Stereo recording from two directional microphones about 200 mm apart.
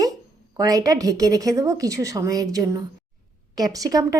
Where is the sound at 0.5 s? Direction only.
20° right (ahead or behind).